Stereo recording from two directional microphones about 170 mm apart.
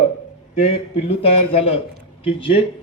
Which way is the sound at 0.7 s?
35° left (ahead or behind).